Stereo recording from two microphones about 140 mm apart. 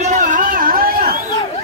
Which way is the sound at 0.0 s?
65° right (ahead or behind).